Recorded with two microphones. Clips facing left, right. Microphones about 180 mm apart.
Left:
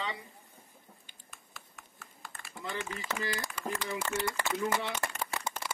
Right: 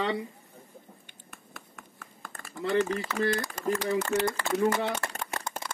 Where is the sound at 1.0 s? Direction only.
60° right (ahead or behind).